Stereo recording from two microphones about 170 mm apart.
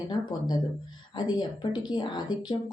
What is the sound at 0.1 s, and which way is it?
A woman's voice, 25° left (ahead or behind).